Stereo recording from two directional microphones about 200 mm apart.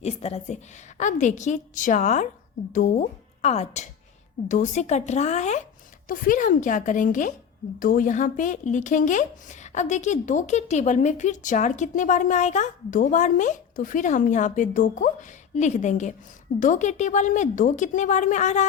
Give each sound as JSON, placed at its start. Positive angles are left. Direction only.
{"t": 0.0, "sound": "a woman's voice", "side_deg": 30}